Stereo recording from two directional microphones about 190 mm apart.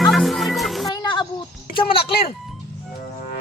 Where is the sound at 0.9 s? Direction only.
20° left (ahead or behind).